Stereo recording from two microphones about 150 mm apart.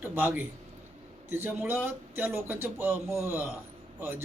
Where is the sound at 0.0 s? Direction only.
15° right (ahead or behind).